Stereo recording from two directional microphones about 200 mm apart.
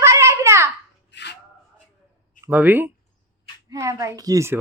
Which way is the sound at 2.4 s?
10° right (ahead or behind).